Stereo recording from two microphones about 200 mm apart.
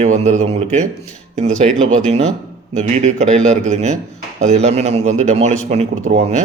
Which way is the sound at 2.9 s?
35° right (ahead or behind).